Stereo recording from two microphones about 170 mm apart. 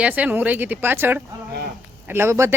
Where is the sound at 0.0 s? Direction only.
10° right (ahead or behind).